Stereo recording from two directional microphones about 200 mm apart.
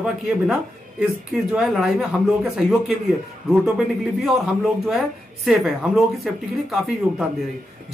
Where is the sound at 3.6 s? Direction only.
Centre (ahead or behind).